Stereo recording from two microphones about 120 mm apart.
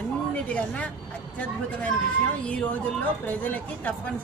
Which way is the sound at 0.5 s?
10° left (ahead or behind).